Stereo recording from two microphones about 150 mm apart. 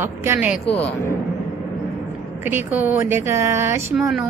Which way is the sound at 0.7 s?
10° left (ahead or behind).